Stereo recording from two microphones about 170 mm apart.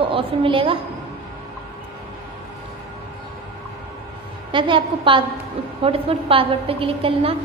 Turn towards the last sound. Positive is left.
turn(degrees=-35)  # may be behind; listen again after turning